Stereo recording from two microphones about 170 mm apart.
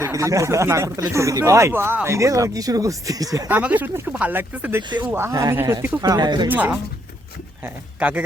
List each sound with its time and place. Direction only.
0.0 s speech: 20° right (ahead or behind)
3.6 s speech: 10° right (ahead or behind)
6.5 s speech: 10° right (ahead or behind)